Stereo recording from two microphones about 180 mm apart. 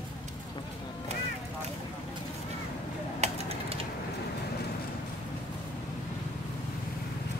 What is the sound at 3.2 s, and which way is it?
Typing, 35° right (ahead or behind).